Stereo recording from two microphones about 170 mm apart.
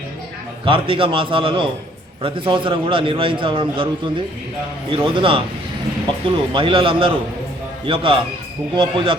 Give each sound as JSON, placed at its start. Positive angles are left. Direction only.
{"t": 0.6, "sound": "a man's voice", "side_deg": -30}
{"t": 6.5, "sound": "a man's voice", "side_deg": -30}